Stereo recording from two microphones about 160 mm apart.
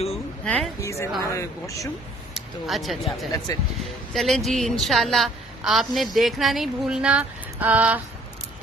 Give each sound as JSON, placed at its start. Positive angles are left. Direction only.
{"t": 0.8, "sound": "a woman's voice", "side_deg": 20}
{"t": 2.3, "sound": "speech", "side_deg": 0}
{"t": 3.3, "sound": "speech", "side_deg": 25}
{"t": 4.1, "sound": "a woman's voice", "side_deg": 0}